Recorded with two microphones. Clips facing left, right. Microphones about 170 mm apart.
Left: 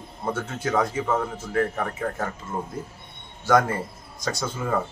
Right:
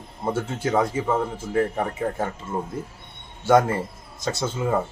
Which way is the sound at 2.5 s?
5° right (ahead or behind).